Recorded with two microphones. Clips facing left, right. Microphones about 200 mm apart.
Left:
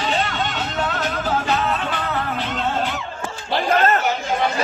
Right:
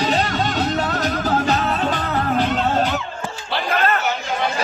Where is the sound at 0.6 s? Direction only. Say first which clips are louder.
Right 4 dB; 40° right (ahead or behind).